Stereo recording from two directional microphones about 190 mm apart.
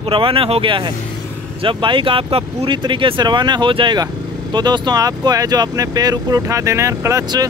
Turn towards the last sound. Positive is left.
turn(degrees=-15)  # may be behind; listen again after turning